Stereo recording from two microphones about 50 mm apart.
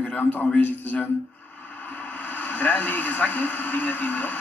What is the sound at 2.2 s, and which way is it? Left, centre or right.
Speech, left.